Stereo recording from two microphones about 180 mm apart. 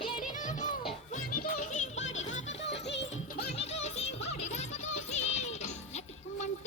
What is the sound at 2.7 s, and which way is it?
Music, 75° left (ahead or behind).